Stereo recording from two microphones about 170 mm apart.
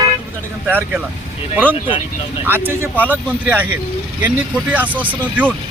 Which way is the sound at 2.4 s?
10° right (ahead or behind).